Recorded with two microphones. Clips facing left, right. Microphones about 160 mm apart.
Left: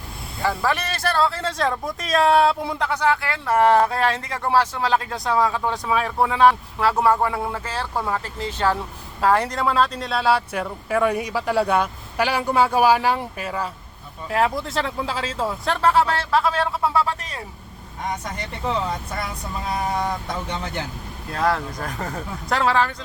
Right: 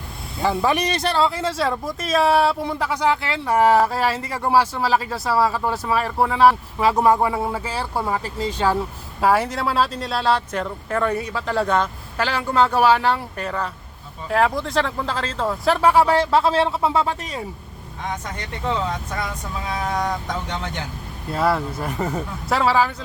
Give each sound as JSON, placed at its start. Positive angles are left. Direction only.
{"t": 0.4, "sound": "speech", "side_deg": -20}
{"t": 16.3, "sound": "speech", "side_deg": -25}
{"t": 21.3, "sound": "speech", "side_deg": -5}